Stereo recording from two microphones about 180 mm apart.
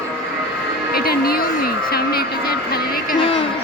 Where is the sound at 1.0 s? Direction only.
55° left (ahead or behind).